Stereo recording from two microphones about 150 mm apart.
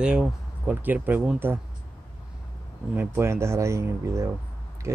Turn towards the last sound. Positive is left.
turn(degrees=-15)  # may be behind; listen again after turning